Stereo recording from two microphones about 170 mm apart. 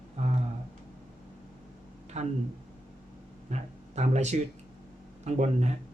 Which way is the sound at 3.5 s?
40° right (ahead or behind).